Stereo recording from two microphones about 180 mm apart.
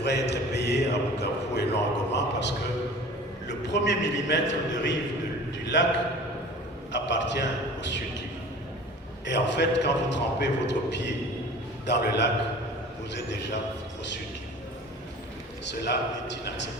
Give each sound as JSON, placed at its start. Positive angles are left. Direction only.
{"t": 0.0, "sound": "a man's voice", "side_deg": 70}
{"t": 6.9, "sound": "a man's voice", "side_deg": 75}
{"t": 9.2, "sound": "a man's voice", "side_deg": 75}
{"t": 15.6, "sound": "a man's voice", "side_deg": 75}